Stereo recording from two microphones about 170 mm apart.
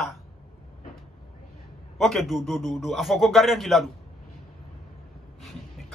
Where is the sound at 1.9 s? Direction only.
Centre (ahead or behind).